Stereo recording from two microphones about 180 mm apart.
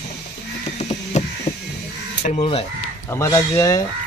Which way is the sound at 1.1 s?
40° left (ahead or behind).